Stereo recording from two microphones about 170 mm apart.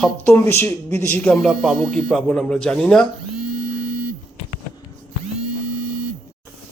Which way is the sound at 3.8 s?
60° right (ahead or behind).